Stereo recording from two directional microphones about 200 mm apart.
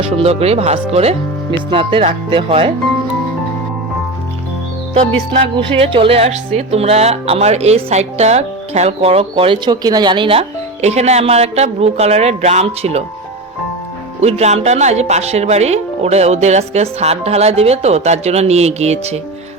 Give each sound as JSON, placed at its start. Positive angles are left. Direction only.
{"t": 0.2, "sound": "speech", "side_deg": -30}
{"t": 5.5, "sound": "speech", "side_deg": -25}
{"t": 14.2, "sound": "speech", "side_deg": -35}